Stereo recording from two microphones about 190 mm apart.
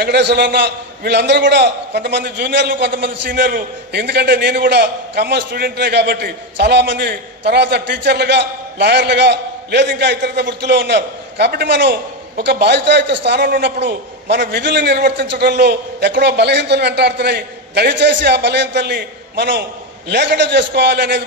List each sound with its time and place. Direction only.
0.0 s a man's voice: 60° right (ahead or behind)